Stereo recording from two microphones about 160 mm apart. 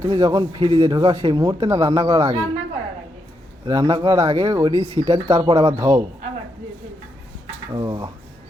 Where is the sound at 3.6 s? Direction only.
20° right (ahead or behind).